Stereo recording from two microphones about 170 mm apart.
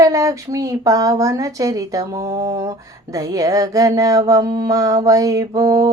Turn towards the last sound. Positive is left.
turn(degrees=-20)  # may be behind; listen again after turning